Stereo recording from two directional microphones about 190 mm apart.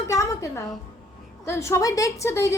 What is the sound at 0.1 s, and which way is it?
Music, 15° left (ahead or behind).